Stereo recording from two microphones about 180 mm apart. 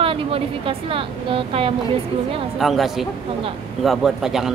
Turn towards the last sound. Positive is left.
turn(degrees=0)  # may be behind; listen again after turning